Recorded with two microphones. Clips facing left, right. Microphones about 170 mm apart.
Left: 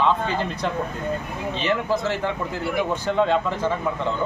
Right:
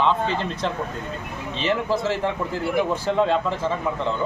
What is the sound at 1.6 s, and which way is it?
Speech, 30° right (ahead or behind).